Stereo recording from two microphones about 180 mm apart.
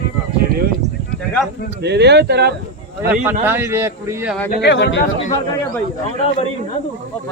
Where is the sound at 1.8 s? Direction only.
70° right (ahead or behind).